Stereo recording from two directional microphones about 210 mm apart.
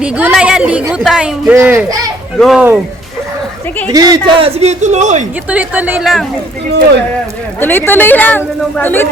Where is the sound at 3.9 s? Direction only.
20° right (ahead or behind); by 5.3 s 35° right (ahead or behind).